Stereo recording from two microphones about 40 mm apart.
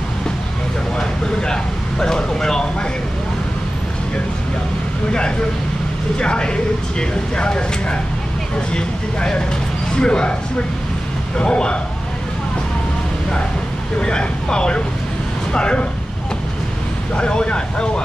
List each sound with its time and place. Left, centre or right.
0.9 s speech: centre
6.1 s speech: left
11.3 s speech: left
13.9 s speech: left
17.2 s speech: left